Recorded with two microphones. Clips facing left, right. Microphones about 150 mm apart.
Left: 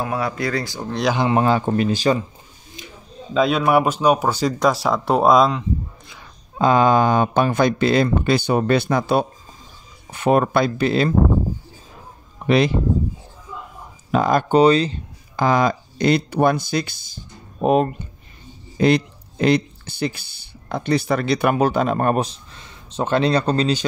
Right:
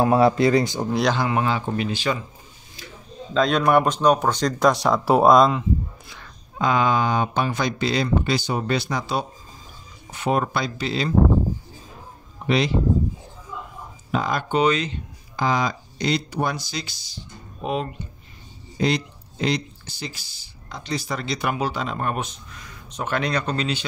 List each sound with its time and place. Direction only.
0.0 s speech: 30° right (ahead or behind)
1.3 s speech: 40° left (ahead or behind)
3.3 s speech: 5° left (ahead or behind)
6.6 s speech: 40° left (ahead or behind)
12.4 s speech: 55° left (ahead or behind)
14.1 s speech: 45° left (ahead or behind)
15.3 s speech: 50° left (ahead or behind); by 23.8 s 35° left (ahead or behind)